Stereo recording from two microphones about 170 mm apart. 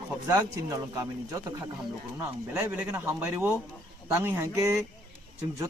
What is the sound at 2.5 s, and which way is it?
A man's voice, 10° right (ahead or behind).